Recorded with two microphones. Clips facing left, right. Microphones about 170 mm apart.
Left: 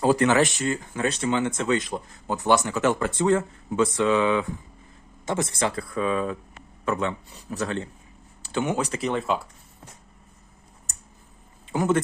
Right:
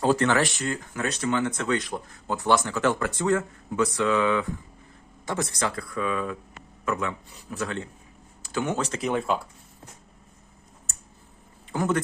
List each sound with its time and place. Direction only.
0.0 s speech: 10° left (ahead or behind); by 7.9 s 35° left (ahead or behind)
8.6 s speech: 10° left (ahead or behind)
9.0 s speech: centre (ahead or behind)
11.7 s speech: 20° left (ahead or behind)